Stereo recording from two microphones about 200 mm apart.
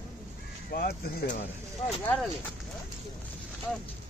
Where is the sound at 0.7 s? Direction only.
45° left (ahead or behind).